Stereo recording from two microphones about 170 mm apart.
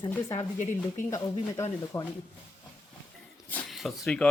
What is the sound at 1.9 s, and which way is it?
Speech, 15° left (ahead or behind).